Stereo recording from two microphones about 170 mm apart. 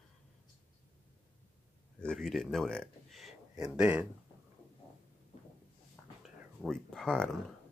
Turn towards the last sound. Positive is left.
turn(degrees=5)  # may be behind; listen again after turning